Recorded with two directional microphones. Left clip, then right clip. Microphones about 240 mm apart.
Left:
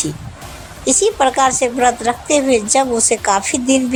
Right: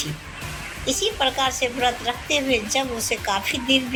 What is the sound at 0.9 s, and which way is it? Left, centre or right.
A woman's voice, left.